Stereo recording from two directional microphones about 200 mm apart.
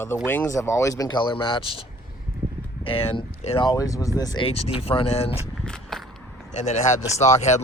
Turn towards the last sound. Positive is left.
turn(degrees=35)  # may be behind; listen again after turning